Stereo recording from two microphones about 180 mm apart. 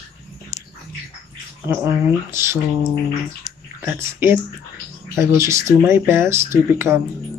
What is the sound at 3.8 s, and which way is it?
Speech, 10° right (ahead or behind).